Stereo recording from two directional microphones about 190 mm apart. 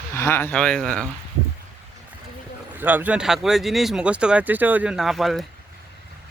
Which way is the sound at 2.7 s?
10° right (ahead or behind).